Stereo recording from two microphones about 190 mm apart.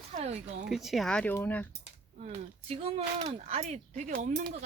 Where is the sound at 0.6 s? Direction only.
Centre (ahead or behind).